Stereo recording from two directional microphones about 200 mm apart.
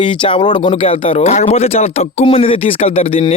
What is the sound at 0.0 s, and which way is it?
Speech, 25° left (ahead or behind).